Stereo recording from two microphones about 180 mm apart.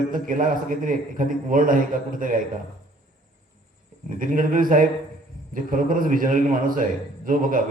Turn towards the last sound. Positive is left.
turn(degrees=-50)  # may be behind; listen again after turning